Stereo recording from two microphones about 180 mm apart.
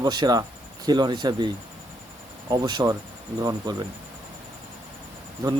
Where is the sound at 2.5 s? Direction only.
20° right (ahead or behind).